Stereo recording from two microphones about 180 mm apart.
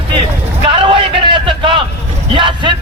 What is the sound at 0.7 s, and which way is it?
Speech, 30° right (ahead or behind).